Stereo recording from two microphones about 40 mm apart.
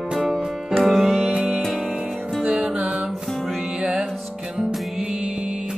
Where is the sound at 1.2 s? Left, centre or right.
Centre.